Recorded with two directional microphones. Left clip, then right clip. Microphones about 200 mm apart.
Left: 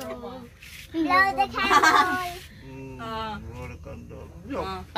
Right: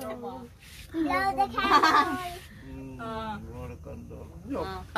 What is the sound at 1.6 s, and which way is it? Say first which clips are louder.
Speech: left 3 dB; 60° left (ahead or behind).